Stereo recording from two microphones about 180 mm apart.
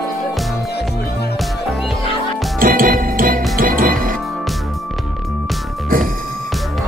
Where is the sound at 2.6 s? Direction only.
50° right (ahead or behind).